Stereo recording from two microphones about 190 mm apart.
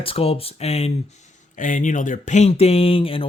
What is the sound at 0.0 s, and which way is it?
Speech, 30° left (ahead or behind).